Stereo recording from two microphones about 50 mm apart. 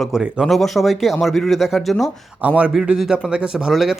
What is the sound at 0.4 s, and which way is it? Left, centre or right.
Speech, centre.